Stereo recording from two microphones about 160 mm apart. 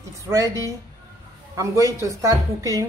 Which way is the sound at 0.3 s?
15° right (ahead or behind).